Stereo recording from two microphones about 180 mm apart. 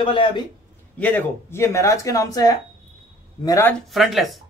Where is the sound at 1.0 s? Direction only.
10° left (ahead or behind).